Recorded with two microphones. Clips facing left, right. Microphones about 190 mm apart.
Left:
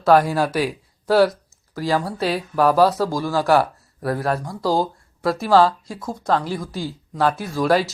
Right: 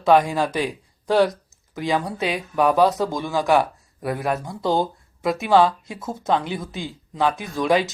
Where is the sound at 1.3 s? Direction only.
20° right (ahead or behind).